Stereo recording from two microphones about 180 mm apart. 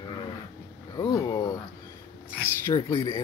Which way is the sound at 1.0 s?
20° left (ahead or behind).